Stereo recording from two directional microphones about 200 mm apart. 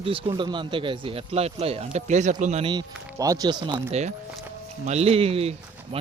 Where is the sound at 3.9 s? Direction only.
35° right (ahead or behind).